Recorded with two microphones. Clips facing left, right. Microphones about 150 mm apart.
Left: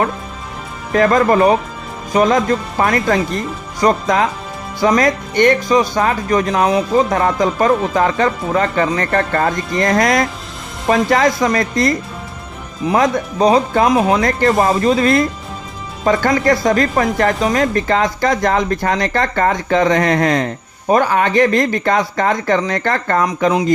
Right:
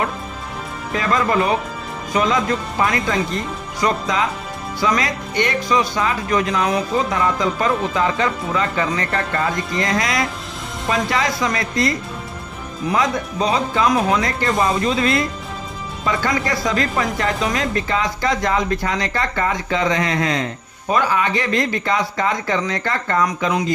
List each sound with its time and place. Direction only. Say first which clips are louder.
0.9 s speech: left 7 dB; 45° left (ahead or behind)